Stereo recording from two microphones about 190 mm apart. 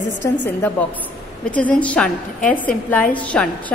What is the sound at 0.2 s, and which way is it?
A woman's voice, 10° left (ahead or behind).